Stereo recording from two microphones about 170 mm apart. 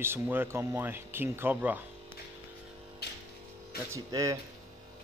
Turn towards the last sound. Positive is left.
turn(degrees=-20)  # may be behind; listen again after turning